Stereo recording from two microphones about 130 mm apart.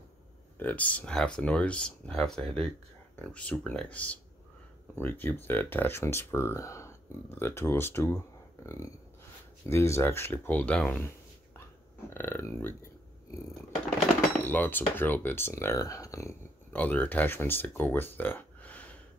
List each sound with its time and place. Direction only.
0.6 s speech: 10° left (ahead or behind)
12.1 s speech: 15° left (ahead or behind)
14.4 s speech: 15° left (ahead or behind)
16.7 s speech: 10° left (ahead or behind)